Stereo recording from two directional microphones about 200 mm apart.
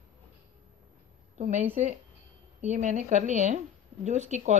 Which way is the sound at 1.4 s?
35° right (ahead or behind).